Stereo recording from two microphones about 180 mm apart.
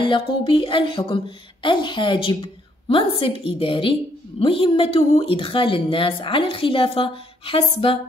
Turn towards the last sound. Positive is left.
turn(degrees=30)  # may be behind; listen again after turning